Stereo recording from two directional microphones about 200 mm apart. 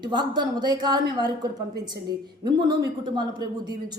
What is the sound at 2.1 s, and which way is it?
A woman's voice, 20° right (ahead or behind).